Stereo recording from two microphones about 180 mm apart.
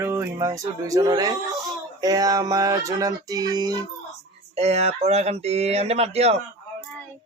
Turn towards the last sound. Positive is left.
turn(degrees=-35)  # may be behind; listen again after turning